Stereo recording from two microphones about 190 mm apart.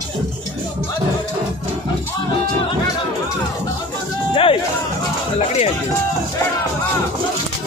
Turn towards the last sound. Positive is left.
turn(degrees=35)  # may be behind; listen again after turning